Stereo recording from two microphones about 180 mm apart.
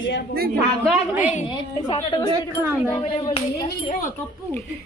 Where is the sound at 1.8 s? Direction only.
25° left (ahead or behind).